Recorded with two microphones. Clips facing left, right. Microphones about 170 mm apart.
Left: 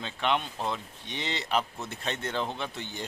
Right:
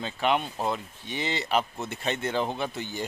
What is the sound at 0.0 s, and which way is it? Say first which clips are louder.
Speech: right 3 dB; 5° right (ahead or behind).